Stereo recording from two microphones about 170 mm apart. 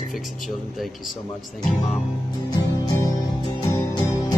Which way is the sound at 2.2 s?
20° left (ahead or behind).